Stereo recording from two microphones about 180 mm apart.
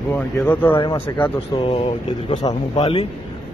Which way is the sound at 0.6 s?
30° left (ahead or behind).